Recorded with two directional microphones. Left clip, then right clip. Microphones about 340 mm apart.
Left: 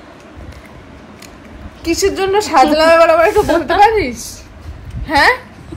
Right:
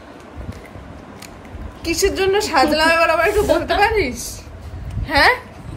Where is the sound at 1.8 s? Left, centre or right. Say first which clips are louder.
Left 3 dB; centre.